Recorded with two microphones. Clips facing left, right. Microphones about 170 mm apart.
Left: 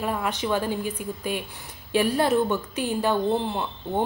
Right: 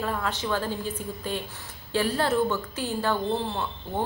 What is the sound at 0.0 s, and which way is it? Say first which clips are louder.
A woman's voice: left 2 dB; 15° left (ahead or behind).